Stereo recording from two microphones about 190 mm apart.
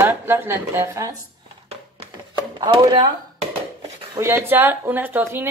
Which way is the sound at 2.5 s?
20° right (ahead or behind).